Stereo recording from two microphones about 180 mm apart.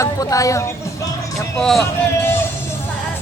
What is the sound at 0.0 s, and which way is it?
Speech, 20° left (ahead or behind).